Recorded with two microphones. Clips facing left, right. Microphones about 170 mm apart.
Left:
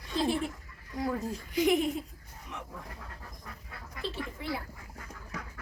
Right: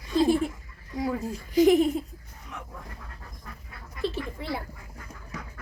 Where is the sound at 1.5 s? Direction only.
40° right (ahead or behind).